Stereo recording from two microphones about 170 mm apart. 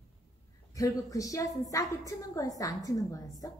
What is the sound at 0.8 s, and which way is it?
A woman's voice, 20° left (ahead or behind).